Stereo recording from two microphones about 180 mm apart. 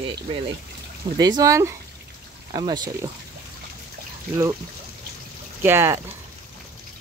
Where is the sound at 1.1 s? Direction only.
20° right (ahead or behind).